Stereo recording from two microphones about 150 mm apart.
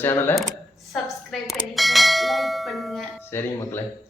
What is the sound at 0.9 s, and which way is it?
Bell, centre (ahead or behind).